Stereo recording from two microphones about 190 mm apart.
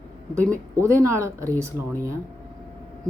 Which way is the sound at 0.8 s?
15° right (ahead or behind).